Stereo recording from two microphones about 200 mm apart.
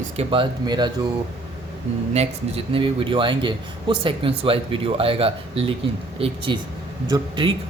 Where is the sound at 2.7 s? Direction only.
25° right (ahead or behind).